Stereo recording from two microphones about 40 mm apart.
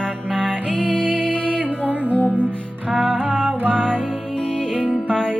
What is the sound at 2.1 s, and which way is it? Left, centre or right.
Music, left.